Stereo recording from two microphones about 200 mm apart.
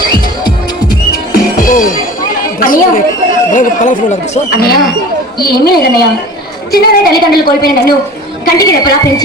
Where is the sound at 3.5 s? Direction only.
40° left (ahead or behind).